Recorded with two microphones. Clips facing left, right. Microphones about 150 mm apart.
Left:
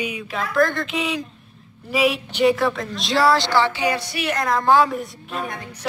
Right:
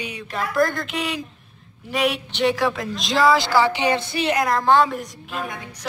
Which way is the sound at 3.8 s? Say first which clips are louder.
Right 2 dB; 25° right (ahead or behind).